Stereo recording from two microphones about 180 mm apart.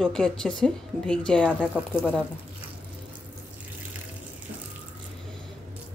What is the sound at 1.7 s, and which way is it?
Speech, 5° right (ahead or behind).